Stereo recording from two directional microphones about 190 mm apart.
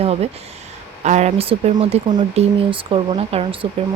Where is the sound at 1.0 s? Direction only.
35° right (ahead or behind).